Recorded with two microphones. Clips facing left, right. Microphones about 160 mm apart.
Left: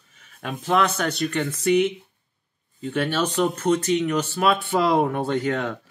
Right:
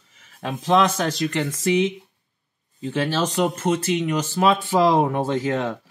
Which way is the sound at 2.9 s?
25° right (ahead or behind).